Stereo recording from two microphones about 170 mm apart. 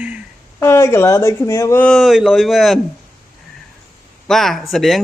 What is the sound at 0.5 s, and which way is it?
Speech, 15° left (ahead or behind).